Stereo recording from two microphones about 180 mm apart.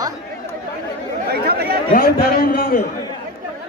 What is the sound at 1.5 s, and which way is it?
Chatter, 60° right (ahead or behind).